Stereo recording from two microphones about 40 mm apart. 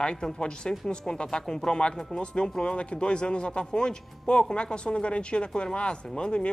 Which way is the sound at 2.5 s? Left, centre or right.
Left.